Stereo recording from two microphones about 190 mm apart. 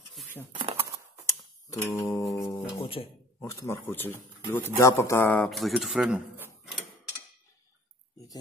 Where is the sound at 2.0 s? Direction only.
15° left (ahead or behind).